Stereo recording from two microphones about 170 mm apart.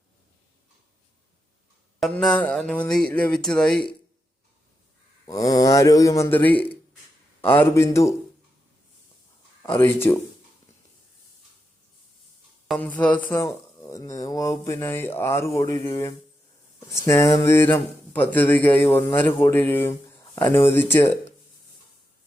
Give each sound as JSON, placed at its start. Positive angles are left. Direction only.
{"t": 2.0, "sound": "speech", "side_deg": 5}
{"t": 5.2, "sound": "a man's voice", "side_deg": 20}
{"t": 9.6, "sound": "speech", "side_deg": 10}
{"t": 12.6, "sound": "speech", "side_deg": 10}